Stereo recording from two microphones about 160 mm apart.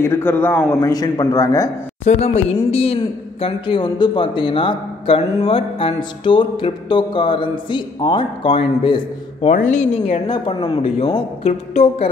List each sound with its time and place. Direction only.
0.0 s a man's voice: 15° left (ahead or behind)
2.0 s speech: 45° left (ahead or behind)
9.5 s speech: 50° left (ahead or behind)
10.2 s speech: 30° left (ahead or behind)